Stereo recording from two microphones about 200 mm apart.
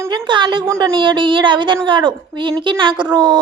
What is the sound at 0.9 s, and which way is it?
Child singing, 25° right (ahead or behind).